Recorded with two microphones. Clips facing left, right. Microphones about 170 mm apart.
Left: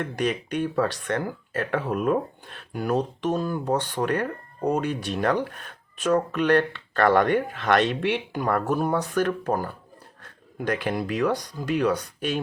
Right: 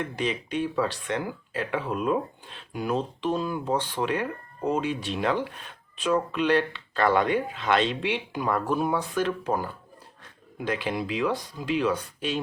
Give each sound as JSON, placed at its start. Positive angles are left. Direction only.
{"t": 0.0, "sound": "speech", "side_deg": 50}
{"t": 8.7, "sound": "speech", "side_deg": 45}